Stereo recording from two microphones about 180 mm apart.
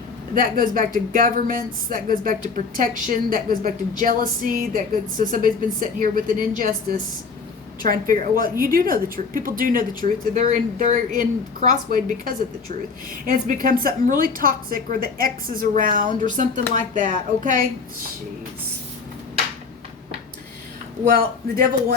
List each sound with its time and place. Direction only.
0.3 s a woman's voice: 50° right (ahead or behind)
7.8 s a woman's voice: 50° right (ahead or behind)
21.0 s a woman's voice: 50° right (ahead or behind)